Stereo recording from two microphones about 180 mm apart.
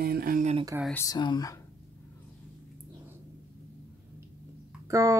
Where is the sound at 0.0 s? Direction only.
55° right (ahead or behind).